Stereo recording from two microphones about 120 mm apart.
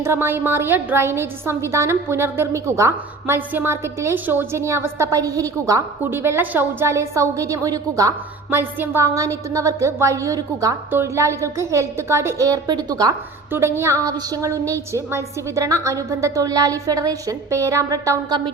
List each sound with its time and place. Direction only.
0.0 s a woman's voice: 20° right (ahead or behind)
6.0 s a woman's voice: 20° right (ahead or behind)
8.4 s a woman's voice: 15° right (ahead or behind)
13.5 s a woman's voice: 20° right (ahead or behind)